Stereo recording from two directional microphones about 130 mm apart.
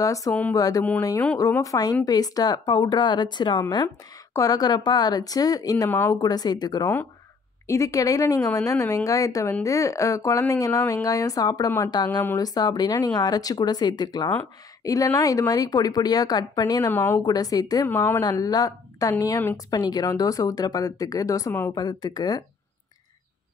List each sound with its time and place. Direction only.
0.0 s a woman's voice: 25° left (ahead or behind)
0.3 s a woman's voice: 10° left (ahead or behind)
0.6 s a woman's voice: 30° left (ahead or behind)
5.9 s a woman's voice: 15° left (ahead or behind)
6.1 s a woman's voice: 30° left (ahead or behind)
16.9 s a woman's voice: 15° left (ahead or behind)
17.2 s a woman's voice: 30° left (ahead or behind)
17.8 s a woman's voice: 15° left (ahead or behind)
18.2 s a woman's voice: 30° left (ahead or behind)